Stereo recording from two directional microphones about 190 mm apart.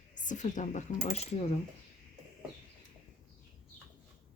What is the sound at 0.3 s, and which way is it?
Speech, 40° left (ahead or behind).